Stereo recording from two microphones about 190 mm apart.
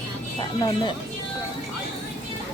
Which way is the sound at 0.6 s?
25° left (ahead or behind).